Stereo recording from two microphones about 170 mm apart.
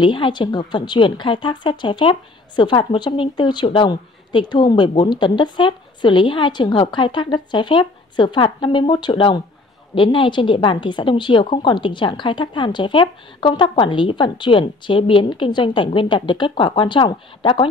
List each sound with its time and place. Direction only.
0.0 s a woman's voice: 30° left (ahead or behind)